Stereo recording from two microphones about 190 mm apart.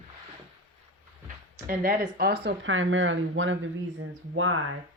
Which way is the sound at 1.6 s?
50° right (ahead or behind).